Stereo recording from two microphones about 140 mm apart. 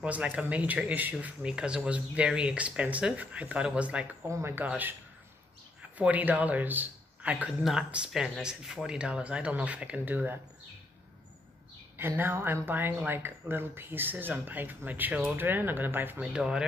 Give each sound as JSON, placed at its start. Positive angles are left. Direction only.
{"t": 0.0, "sound": "a man's voice", "side_deg": -10}
{"t": 12.2, "sound": "a man's voice", "side_deg": -15}